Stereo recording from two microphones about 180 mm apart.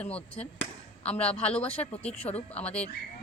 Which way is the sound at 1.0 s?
35° left (ahead or behind).